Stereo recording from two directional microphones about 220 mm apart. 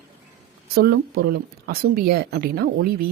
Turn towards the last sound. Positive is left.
turn(degrees=-45)  # may be behind; listen again after turning